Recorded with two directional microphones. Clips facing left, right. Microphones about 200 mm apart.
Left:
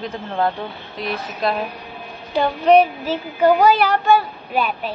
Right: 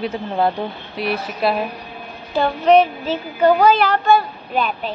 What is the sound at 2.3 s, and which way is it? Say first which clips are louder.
A woman's voice: even; 10° left (ahead or behind).